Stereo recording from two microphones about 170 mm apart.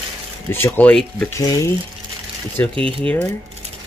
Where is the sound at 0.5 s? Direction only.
15° left (ahead or behind).